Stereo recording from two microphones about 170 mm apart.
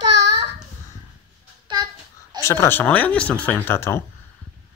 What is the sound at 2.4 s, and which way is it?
Speech, 15° left (ahead or behind).